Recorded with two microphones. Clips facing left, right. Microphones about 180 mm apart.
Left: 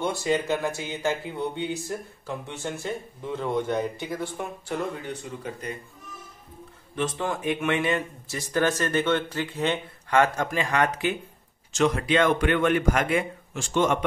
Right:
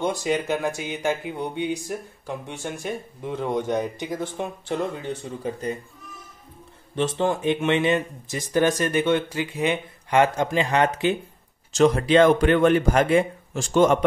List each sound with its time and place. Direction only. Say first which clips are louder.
0.0 s speech: right 1 dB; 15° right (ahead or behind)
7.0 s speech: right 5 dB; 25° right (ahead or behind)